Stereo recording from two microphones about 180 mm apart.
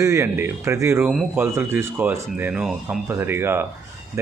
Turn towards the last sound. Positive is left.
turn(degrees=-10)  # may be behind; listen again after turning